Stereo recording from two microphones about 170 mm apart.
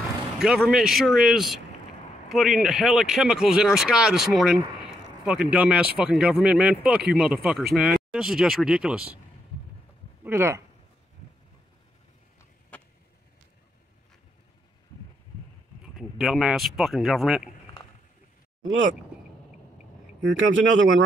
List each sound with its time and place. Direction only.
0.4 s speech: 5° right (ahead or behind)
10.2 s speech: 15° right (ahead or behind)
15.8 s speech: centre (ahead or behind)
20.2 s speech: 90° right